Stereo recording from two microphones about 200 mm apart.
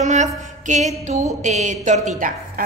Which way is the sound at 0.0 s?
35° right (ahead or behind).